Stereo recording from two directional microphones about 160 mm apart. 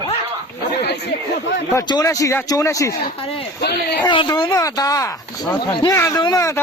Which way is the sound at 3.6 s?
90° left.